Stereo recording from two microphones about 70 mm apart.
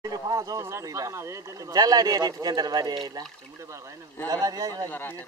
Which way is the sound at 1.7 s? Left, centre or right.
Right.